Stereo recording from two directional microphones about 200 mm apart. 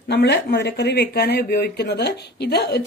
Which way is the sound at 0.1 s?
60° left (ahead or behind).